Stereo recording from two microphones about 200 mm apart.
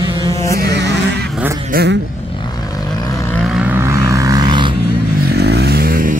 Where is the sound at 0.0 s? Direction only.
20° right (ahead or behind).